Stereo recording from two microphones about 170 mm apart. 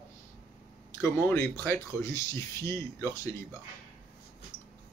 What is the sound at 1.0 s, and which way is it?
Speech, 15° left (ahead or behind).